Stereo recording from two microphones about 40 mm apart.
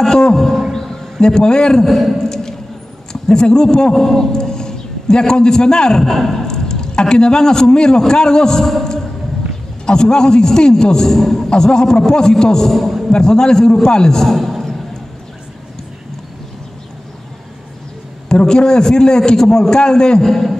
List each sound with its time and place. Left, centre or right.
0.0 s speech: centre
0.7 s a sound: centre
1.9 s a man's voice: centre
2.1 s a sound: centre
3.1 s a man's voice: centre
6.4 s a sound: centre
8.1 s a man's voice: centre
9.8 s a man's voice: centre
12.7 s a man's voice: centre
13.1 s a man's voice: centre
18.3 s a man's voice: centre
20.2 s a man's voice: centre